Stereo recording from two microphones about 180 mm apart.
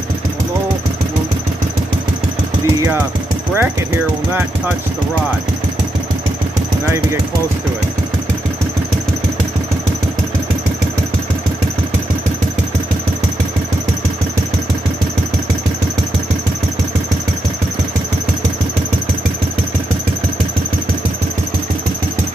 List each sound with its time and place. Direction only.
3.5 s speech: 10° right (ahead or behind)